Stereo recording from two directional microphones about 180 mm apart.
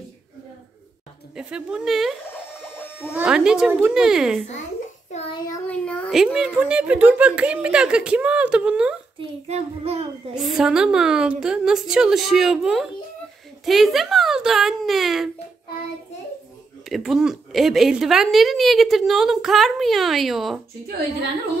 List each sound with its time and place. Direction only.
1.3 s a woman's voice: 5° right (ahead or behind)
5.7 s speech: 5° left (ahead or behind)
6.2 s speech: 5° right (ahead or behind)
9.5 s child singing: 35° right (ahead or behind)
10.3 s a woman's voice: 5° right (ahead or behind)
16.9 s a woman's voice: centre (ahead or behind)